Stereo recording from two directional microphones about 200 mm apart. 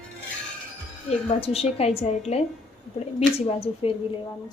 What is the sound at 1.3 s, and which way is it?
A woman's voice, 30° left (ahead or behind).